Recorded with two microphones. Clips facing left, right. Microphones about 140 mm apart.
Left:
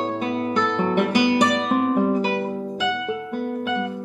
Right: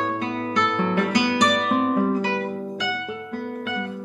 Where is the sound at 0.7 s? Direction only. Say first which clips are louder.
Left 2 dB; 20° left (ahead or behind).